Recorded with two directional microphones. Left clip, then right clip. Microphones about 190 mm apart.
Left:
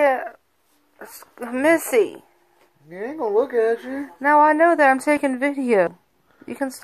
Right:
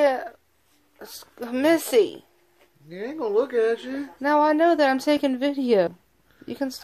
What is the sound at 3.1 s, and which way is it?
Speech, 10° right (ahead or behind).